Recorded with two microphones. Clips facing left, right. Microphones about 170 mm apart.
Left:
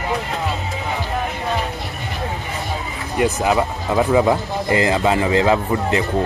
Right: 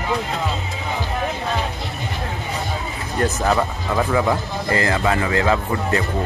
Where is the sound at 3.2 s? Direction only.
10° left (ahead or behind).